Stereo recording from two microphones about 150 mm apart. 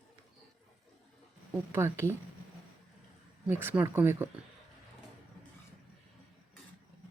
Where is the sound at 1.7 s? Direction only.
15° right (ahead or behind).